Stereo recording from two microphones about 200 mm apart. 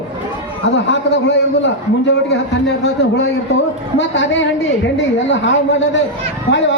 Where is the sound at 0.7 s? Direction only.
60° left (ahead or behind).